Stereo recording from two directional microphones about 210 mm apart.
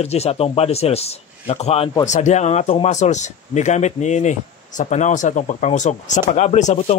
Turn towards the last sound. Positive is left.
turn(degrees=35)  # may be behind; listen again after turning